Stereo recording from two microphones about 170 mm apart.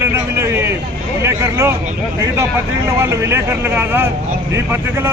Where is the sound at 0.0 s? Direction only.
15° right (ahead or behind).